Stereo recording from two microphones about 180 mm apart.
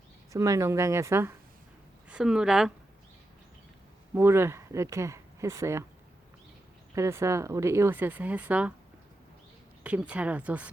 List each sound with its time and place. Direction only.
0.3 s a woman's voice: 15° right (ahead or behind)
4.1 s speech: 15° right (ahead or behind)
6.9 s speech: 15° right (ahead or behind)
9.8 s speech: 5° right (ahead or behind)